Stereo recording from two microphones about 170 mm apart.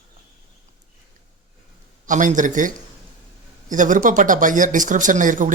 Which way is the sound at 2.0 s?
50° right (ahead or behind).